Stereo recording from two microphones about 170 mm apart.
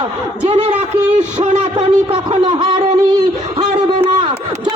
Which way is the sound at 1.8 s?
30° right (ahead or behind).